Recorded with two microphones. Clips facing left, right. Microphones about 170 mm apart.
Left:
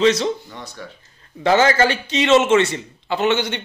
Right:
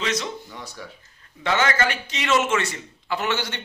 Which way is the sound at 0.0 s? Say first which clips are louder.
Left 10 dB; 30° left (ahead or behind).